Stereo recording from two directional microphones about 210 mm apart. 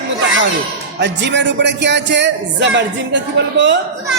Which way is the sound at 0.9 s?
55° right (ahead or behind).